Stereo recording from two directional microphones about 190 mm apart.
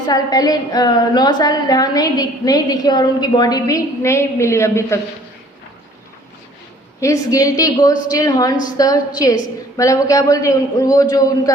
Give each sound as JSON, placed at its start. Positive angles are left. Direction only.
{"t": 0.0, "sound": "a woman's voice", "side_deg": 20}
{"t": 7.0, "sound": "a man's voice", "side_deg": 15}